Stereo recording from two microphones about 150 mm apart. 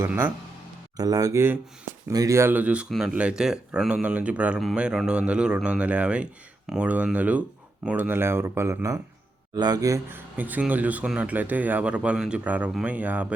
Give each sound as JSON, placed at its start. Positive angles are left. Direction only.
{"t": 0.0, "sound": "speech", "side_deg": -10}
{"t": 0.9, "sound": "speech", "side_deg": -25}